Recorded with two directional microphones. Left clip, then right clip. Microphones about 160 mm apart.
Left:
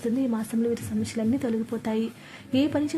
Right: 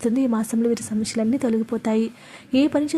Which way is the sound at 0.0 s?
35° right (ahead or behind).